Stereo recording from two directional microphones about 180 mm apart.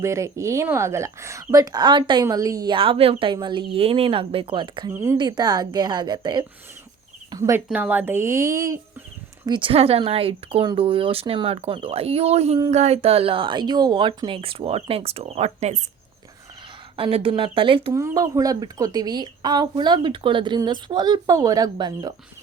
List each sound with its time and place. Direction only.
0.0 s speech: 15° right (ahead or behind)
4.9 s speech: 15° right (ahead or behind)
7.3 s a sound: 20° right (ahead or behind)
7.7 s speech: 10° right (ahead or behind)
9.5 s speech: 30° right (ahead or behind)
17.0 s speech: 30° right (ahead or behind)
17.9 s speech: 20° right (ahead or behind)